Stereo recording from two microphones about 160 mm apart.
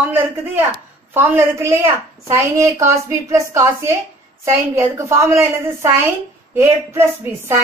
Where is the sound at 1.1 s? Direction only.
15° right (ahead or behind).